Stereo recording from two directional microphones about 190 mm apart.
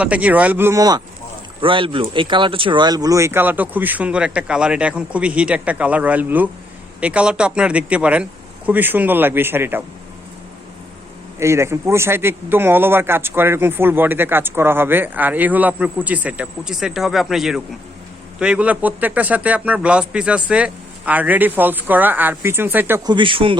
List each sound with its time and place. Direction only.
0.0 s a man's voice: 5° right (ahead or behind)
11.3 s a man's voice: 15° right (ahead or behind)
23.0 s a man's voice: 25° right (ahead or behind)